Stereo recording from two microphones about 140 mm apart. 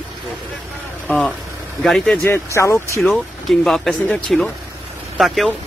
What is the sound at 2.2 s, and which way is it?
Speech, 20° left (ahead or behind).